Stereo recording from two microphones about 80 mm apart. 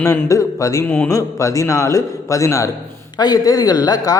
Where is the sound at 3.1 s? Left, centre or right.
Left.